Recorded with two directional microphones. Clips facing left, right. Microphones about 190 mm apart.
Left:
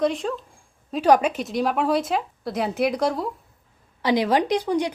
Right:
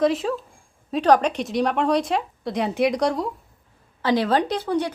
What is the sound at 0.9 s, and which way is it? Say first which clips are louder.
Speech: even; 10° left (ahead or behind).